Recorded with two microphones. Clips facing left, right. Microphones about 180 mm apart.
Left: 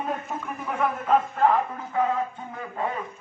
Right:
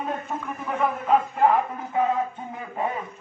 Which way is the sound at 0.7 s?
Centre (ahead or behind).